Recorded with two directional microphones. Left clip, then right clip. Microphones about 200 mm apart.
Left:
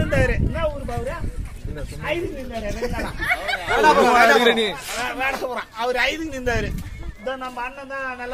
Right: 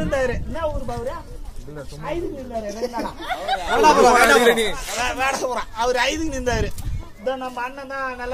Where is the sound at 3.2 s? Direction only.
25° right (ahead or behind).